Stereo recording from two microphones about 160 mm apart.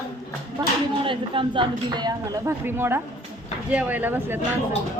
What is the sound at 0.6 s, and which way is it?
Speech, 30° right (ahead or behind).